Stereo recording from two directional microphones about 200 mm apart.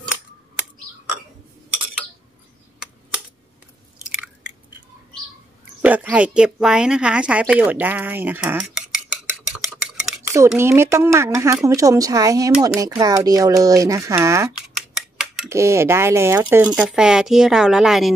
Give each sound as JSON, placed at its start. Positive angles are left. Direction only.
{"t": 5.8, "sound": "a woman's voice", "side_deg": -5}
{"t": 9.5, "sound": "stir", "side_deg": -5}
{"t": 10.6, "sound": "a woman's voice", "side_deg": -15}
{"t": 15.5, "sound": "a woman's voice", "side_deg": -15}